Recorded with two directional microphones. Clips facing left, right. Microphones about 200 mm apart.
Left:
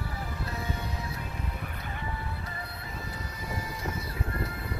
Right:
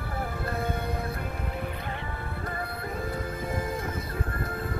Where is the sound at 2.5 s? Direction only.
55° right (ahead or behind).